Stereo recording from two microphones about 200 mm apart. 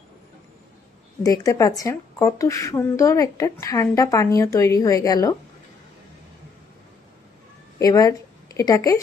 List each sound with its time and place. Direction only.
1.2 s speech: 20° left (ahead or behind)
7.8 s speech: 15° left (ahead or behind)